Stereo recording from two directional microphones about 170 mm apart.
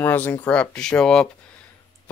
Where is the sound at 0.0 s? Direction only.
10° left (ahead or behind).